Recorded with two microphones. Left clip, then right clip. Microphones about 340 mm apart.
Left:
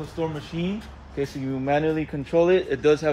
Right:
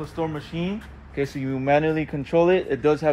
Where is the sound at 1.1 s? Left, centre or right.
Right.